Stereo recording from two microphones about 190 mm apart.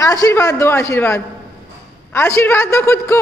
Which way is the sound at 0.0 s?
20° left (ahead or behind).